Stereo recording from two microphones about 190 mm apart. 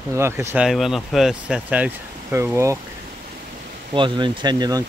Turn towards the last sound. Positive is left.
turn(degrees=-20)  # may be behind; listen again after turning